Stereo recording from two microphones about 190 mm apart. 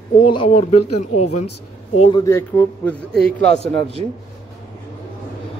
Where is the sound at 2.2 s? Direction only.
10° left (ahead or behind).